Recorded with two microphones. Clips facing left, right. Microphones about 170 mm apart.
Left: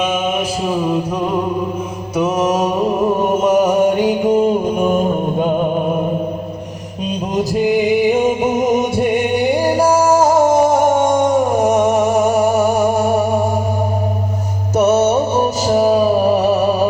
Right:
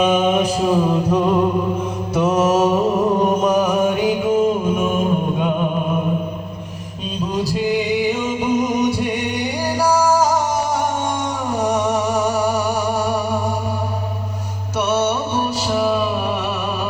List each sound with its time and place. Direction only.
0.0 s mantra: 5° left (ahead or behind)
2.5 s a sound: 15° left (ahead or behind)
3.4 s music: 25° left (ahead or behind)
8.1 s music: 50° left (ahead or behind)
14.8 s music: 45° left (ahead or behind)